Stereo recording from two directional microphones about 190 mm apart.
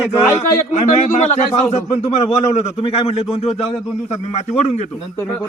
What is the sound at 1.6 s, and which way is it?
A man's voice, 35° left (ahead or behind).